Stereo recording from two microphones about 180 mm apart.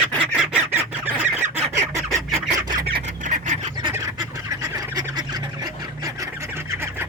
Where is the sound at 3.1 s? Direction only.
45° right (ahead or behind).